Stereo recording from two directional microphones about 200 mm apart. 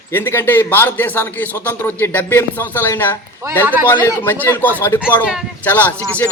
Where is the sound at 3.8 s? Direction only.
10° left (ahead or behind).